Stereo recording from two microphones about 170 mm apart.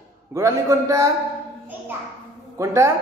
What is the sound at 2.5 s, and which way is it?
Speech, 15° right (ahead or behind).